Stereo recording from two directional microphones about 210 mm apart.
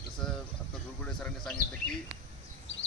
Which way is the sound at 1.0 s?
5° left (ahead or behind).